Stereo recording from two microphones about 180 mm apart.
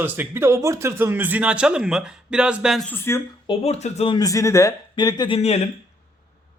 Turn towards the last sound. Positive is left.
turn(degrees=35)  # may be behind; listen again after turning